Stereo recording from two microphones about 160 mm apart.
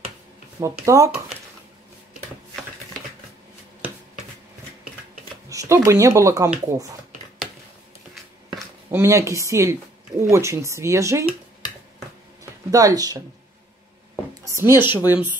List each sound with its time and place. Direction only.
0.6 s speech: 20° right (ahead or behind)
5.5 s speech: 20° right (ahead or behind)
8.9 s speech: 20° right (ahead or behind)
12.7 s speech: 20° right (ahead or behind)
14.4 s a sound: 15° right (ahead or behind)
15.0 s speech: 10° right (ahead or behind)